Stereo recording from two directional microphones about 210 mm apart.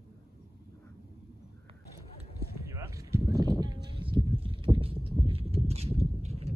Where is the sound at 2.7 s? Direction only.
15° right (ahead or behind).